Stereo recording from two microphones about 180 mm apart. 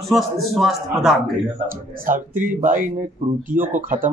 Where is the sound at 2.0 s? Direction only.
45° right (ahead or behind).